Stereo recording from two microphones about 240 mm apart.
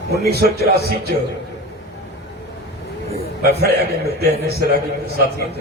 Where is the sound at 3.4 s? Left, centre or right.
Right.